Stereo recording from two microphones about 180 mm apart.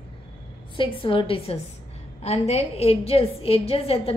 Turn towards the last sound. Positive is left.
turn(degrees=35)  # may be behind; listen again after turning